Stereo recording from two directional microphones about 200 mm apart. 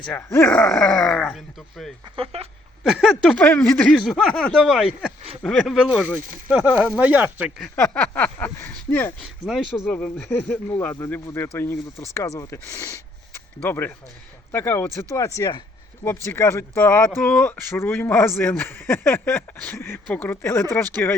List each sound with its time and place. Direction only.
0.0 s speech: 10° left (ahead or behind)
2.1 s speech: 30° right (ahead or behind)
2.8 s speech: centre (ahead or behind)
7.8 s a man's voice: 5° left (ahead or behind)
9.2 s a man's voice: centre (ahead or behind)